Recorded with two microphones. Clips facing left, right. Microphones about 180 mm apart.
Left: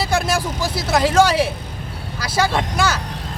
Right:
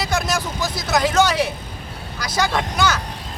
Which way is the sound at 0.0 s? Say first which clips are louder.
Left 3 dB; 30° left (ahead or behind).